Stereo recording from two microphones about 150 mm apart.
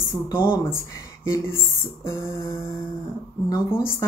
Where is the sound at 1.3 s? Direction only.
15° left (ahead or behind).